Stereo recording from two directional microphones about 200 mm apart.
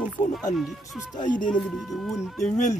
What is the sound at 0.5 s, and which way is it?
Speech, centre (ahead or behind).